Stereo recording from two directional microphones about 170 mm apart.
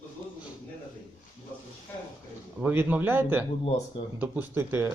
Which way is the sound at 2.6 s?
10° right (ahead or behind).